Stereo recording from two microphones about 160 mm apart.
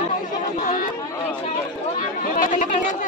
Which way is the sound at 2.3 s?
55° left (ahead or behind).